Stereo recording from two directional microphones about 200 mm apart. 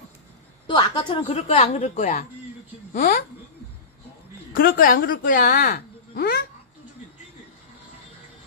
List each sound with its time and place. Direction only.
0.7 s a woman's voice: 25° left (ahead or behind); by 3.3 s 45° left (ahead or behind)
4.6 s speech: 45° left (ahead or behind)